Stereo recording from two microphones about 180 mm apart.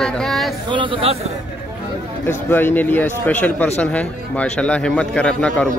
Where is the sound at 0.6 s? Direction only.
30° right (ahead or behind).